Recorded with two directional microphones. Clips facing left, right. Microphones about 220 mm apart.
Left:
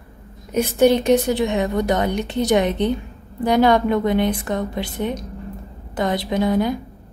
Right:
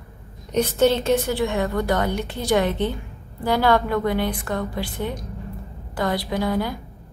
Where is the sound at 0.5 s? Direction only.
10° left (ahead or behind).